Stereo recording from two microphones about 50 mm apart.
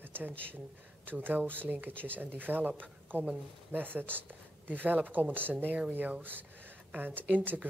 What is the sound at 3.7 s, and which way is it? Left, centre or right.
Speech, right.